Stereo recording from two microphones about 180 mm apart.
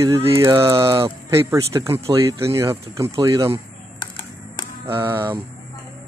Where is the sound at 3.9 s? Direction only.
25° left (ahead or behind).